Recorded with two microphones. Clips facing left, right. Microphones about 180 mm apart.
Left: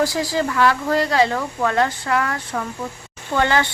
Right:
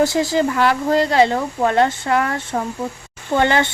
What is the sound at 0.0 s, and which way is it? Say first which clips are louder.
Speech: right 4 dB; 25° right (ahead or behind).